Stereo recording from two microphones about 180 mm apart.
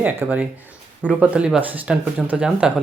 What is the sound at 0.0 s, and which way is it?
Speech, 10° right (ahead or behind).